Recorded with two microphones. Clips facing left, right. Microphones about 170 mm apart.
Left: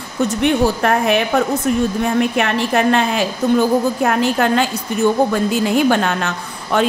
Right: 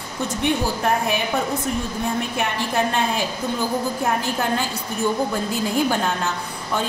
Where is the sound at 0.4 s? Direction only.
75° left (ahead or behind).